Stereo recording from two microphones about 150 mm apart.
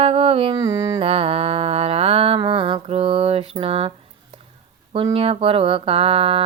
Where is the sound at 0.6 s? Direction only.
25° right (ahead or behind).